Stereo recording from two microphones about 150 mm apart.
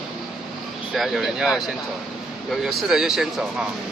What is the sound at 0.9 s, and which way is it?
Speech, centre (ahead or behind).